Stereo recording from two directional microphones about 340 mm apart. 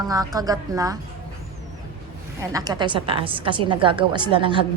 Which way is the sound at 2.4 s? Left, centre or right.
Centre.